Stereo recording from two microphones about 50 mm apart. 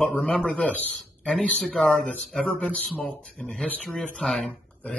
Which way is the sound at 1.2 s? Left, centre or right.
Left.